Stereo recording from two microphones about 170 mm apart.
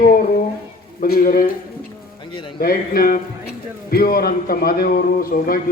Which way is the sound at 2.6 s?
60° left (ahead or behind).